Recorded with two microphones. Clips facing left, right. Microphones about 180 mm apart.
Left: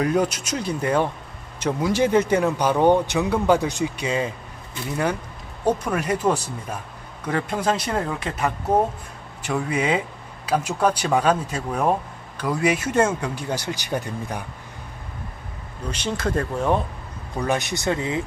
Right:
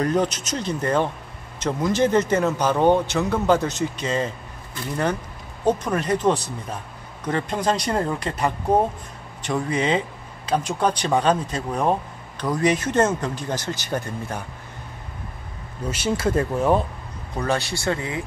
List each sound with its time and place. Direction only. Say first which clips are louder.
0.0 s speech: even; 10° left (ahead or behind)
5.7 s speech: right 1 dB; 10° left (ahead or behind)
15.9 s speech: right 3 dB; 5° right (ahead or behind)
17.4 s speech: even; 15° left (ahead or behind)